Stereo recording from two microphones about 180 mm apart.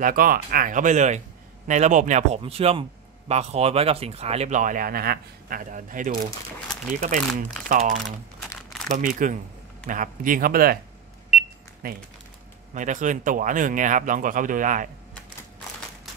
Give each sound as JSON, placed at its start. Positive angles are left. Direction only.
{"t": 0.0, "sound": "speech", "side_deg": -50}
{"t": 11.3, "sound": "cash register", "side_deg": -5}
{"t": 12.7, "sound": "speech", "side_deg": -45}